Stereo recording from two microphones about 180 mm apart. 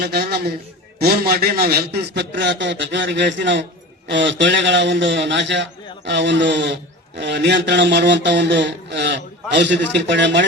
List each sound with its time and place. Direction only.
0.0 s a man's voice: 60° right (ahead or behind); by 10.4 s 80° right